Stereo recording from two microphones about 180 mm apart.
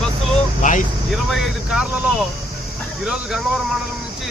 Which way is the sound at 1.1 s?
Centre (ahead or behind).